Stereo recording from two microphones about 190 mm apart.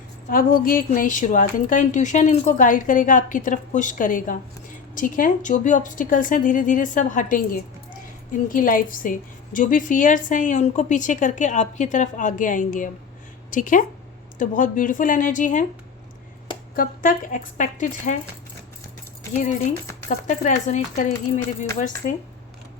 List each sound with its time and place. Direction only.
0.3 s a woman's voice: 50° left (ahead or behind)
16.7 s a woman's voice: 45° left (ahead or behind)
19.3 s speech: 40° left (ahead or behind)